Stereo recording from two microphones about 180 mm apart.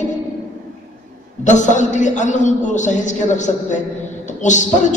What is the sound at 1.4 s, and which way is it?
A man's voice, 45° left (ahead or behind).